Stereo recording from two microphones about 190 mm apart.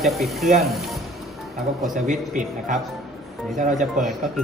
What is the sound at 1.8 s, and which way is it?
A man's voice, 40° right (ahead or behind).